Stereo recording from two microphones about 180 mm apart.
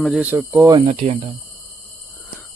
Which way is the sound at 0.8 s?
35° right (ahead or behind).